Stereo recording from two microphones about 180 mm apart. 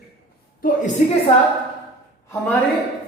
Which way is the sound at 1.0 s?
50° left (ahead or behind).